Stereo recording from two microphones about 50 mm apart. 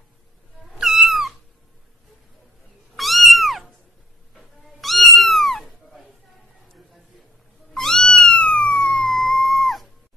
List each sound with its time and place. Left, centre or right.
0.7 s cat: centre
3.0 s cat: centre
7.7 s cat: centre